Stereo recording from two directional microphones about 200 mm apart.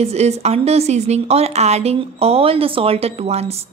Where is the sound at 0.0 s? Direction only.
30° right (ahead or behind).